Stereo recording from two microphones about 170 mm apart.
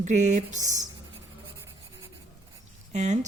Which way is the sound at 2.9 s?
45° right (ahead or behind).